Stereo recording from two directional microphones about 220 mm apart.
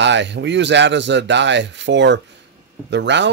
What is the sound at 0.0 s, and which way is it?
Speech, 55° right (ahead or behind).